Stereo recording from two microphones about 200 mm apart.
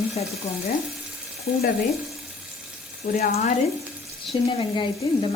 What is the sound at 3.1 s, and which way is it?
Speech, 35° left (ahead or behind).